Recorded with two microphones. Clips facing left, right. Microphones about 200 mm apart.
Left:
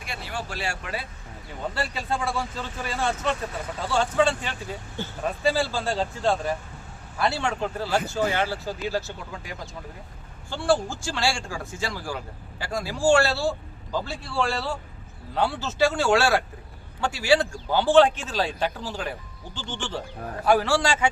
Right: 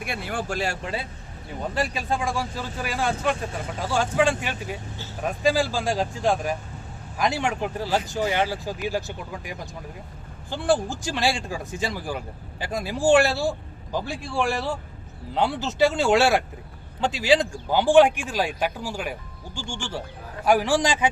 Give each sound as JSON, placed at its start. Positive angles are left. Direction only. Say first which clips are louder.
{"t": 0.0, "sound": "speech", "louder": "right 4 dB", "side_deg": -55}
{"t": 0.8, "sound": "speech", "louder": "right 3 dB", "side_deg": -25}
{"t": 1.7, "sound": "speech", "louder": "right 4 dB", "side_deg": -15}